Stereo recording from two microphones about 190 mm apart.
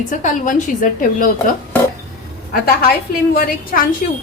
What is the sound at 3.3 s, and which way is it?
Speech, 50° left (ahead or behind).